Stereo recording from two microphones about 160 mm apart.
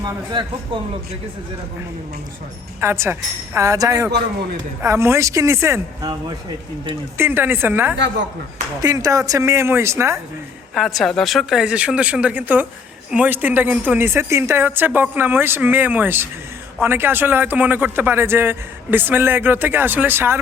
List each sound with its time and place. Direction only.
2.8 s a man's voice: 15° right (ahead or behind)
7.2 s a man's voice: 15° right (ahead or behind)
8.8 s speech: 25° right (ahead or behind)
10.8 s a man's voice: centre (ahead or behind)